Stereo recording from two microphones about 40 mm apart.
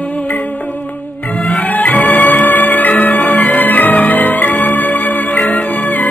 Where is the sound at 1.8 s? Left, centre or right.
Left.